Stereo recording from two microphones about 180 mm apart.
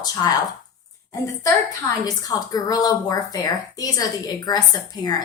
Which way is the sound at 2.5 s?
20° left (ahead or behind).